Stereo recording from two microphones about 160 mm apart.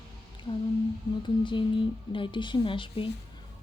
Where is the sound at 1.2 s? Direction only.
30° left (ahead or behind).